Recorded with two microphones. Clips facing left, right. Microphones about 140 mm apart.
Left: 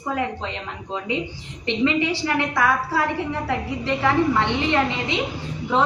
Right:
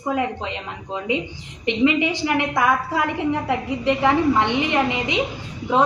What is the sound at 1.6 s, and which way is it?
A woman's voice, 15° right (ahead or behind).